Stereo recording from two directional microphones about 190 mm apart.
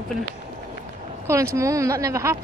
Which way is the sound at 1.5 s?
15° right (ahead or behind).